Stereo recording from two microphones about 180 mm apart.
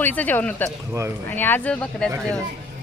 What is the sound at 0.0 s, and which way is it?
Speech, 10° left (ahead or behind).